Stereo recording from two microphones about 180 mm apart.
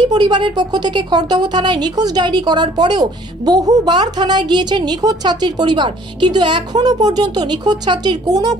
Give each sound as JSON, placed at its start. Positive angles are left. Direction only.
{"t": 0.0, "sound": "a woman's voice", "side_deg": -25}